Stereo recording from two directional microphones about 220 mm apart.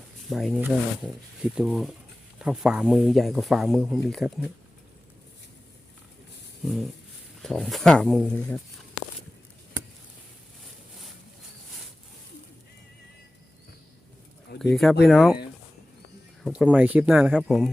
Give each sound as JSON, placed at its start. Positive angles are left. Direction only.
{"t": 0.3, "sound": "speech", "side_deg": 0}
{"t": 7.4, "sound": "speech", "side_deg": 0}
{"t": 14.6, "sound": "speech", "side_deg": 0}
{"t": 16.4, "sound": "speech", "side_deg": -5}